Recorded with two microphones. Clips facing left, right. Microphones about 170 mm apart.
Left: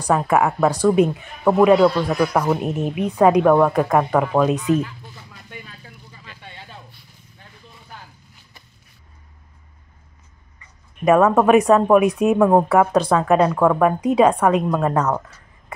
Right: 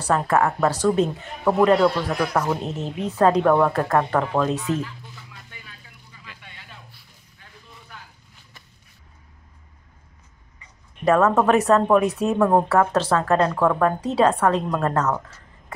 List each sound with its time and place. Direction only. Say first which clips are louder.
0.0 s a woman's voice: left 2 dB; 10° left (ahead or behind)
5.5 s a sound: left 8 dB; 40° left (ahead or behind)
11.1 s a woman's voice: left 3 dB; 15° left (ahead or behind)